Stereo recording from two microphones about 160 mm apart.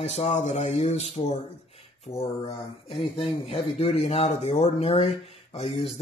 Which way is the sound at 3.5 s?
40° left (ahead or behind).